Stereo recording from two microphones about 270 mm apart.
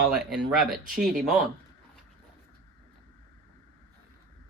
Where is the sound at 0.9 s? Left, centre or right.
Right.